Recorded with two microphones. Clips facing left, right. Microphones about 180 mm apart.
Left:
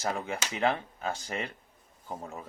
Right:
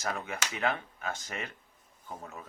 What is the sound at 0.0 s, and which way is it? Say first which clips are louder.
Speech: left 3 dB; 30° left (ahead or behind).